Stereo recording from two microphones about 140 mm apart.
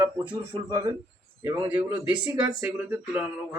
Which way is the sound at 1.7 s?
10° right (ahead or behind).